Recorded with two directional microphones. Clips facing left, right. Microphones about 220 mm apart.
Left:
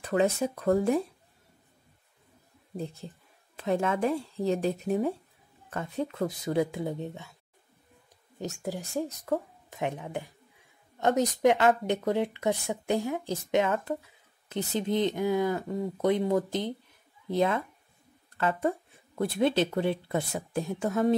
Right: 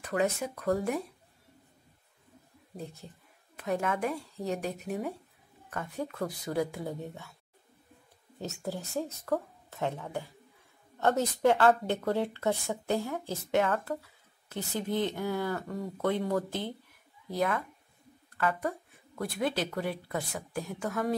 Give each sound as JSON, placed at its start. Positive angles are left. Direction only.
{"t": 0.0, "sound": "speech", "side_deg": 30}
{"t": 3.5, "sound": "speech", "side_deg": 25}
{"t": 8.6, "sound": "a woman's voice", "side_deg": 15}